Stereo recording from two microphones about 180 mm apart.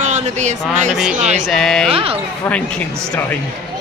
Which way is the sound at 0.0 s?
40° right (ahead or behind).